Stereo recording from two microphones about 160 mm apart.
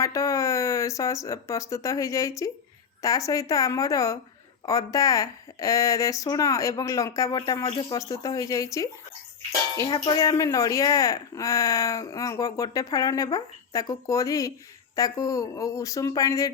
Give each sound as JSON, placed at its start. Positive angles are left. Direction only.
{"t": 0.0, "sound": "a woman's voice", "side_deg": 20}